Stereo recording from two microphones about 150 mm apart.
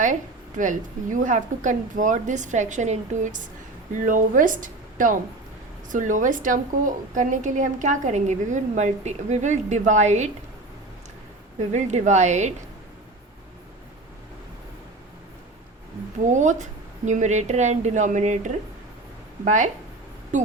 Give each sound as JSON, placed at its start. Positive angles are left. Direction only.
{"t": 0.0, "sound": "a woman's voice", "side_deg": -60}
{"t": 11.7, "sound": "speech", "side_deg": -50}
{"t": 16.2, "sound": "a woman's voice", "side_deg": -55}